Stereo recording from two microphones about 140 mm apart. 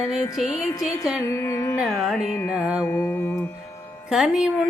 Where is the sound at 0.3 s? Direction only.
Centre (ahead or behind).